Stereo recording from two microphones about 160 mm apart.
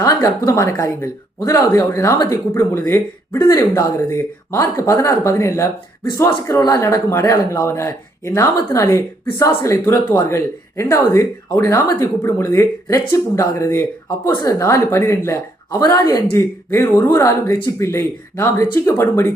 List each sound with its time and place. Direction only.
0.0 s speech: 25° left (ahead or behind)